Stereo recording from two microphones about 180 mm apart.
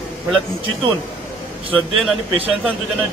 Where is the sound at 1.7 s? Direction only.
Centre (ahead or behind).